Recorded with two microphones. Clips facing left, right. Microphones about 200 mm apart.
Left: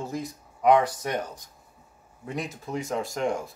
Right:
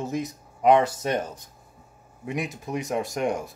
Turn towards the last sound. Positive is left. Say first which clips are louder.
# right 1 dB
turn(degrees=-20)  # may be behind; listen again after turning